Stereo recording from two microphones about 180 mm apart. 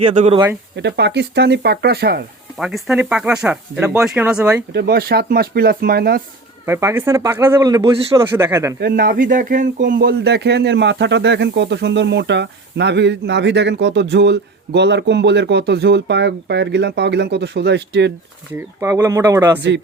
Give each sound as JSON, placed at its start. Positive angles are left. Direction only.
{"t": 0.1, "sound": "speech", "side_deg": -40}
{"t": 0.8, "sound": "speech", "side_deg": -70}
{"t": 2.6, "sound": "speech", "side_deg": 0}
{"t": 4.7, "sound": "speech", "side_deg": -60}
{"t": 6.7, "sound": "speech", "side_deg": -15}
{"t": 8.8, "sound": "speech", "side_deg": -55}
{"t": 18.8, "sound": "speech", "side_deg": -15}